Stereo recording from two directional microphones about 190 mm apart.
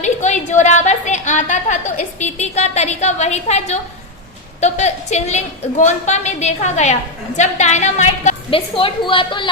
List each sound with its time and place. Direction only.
0.0 s a woman's voice: 40° left (ahead or behind)